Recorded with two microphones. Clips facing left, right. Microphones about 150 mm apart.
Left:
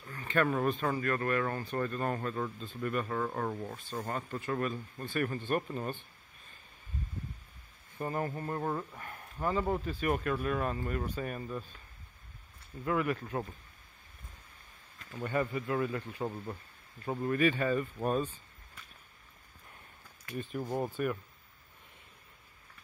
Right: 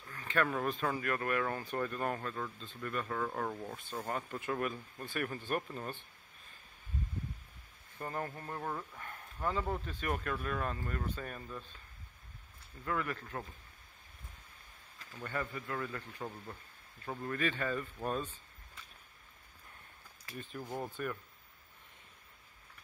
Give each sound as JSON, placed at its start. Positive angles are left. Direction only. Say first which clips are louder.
{"t": 0.1, "sound": "speech", "louder": "left 4 dB", "side_deg": 5}
{"t": 2.1, "sound": "speech", "louder": "left 5 dB", "side_deg": 10}
{"t": 5.6, "sound": "speech", "louder": "left 5 dB", "side_deg": 10}
{"t": 8.0, "sound": "speech", "louder": "left 5 dB", "side_deg": 10}
{"t": 12.8, "sound": "speech", "louder": "left 6 dB", "side_deg": 15}
{"t": 15.2, "sound": "speech", "louder": "left 7 dB", "side_deg": 20}
{"t": 16.2, "sound": "speech", "louder": "left 7 dB", "side_deg": 35}
{"t": 17.0, "sound": "speech", "louder": "left 7 dB", "side_deg": 20}
{"t": 20.3, "sound": "speech", "louder": "left 7 dB", "side_deg": 20}